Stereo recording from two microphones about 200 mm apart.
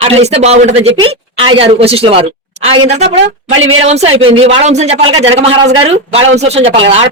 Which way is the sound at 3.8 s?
30° right (ahead or behind).